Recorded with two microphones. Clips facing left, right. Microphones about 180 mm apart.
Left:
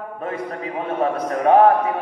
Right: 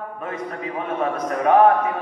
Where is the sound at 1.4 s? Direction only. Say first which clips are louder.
Left 1 dB; 35° left (ahead or behind).